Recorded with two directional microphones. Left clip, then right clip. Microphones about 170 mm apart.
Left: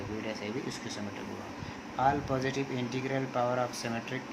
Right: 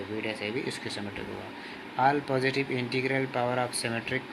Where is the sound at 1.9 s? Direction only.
20° right (ahead or behind).